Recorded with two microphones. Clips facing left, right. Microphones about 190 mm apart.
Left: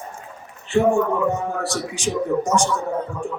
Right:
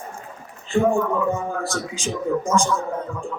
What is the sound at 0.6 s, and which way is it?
A man's voice, 75° left (ahead or behind).